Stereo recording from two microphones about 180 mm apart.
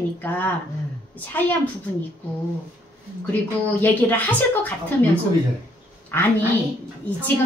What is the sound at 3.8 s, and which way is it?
A woman's voice, 10° left (ahead or behind).